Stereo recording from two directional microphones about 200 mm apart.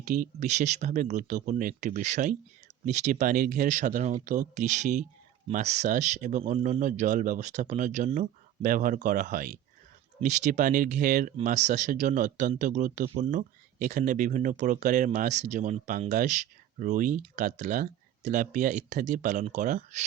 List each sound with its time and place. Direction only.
0.0 s speech: 40° right (ahead or behind)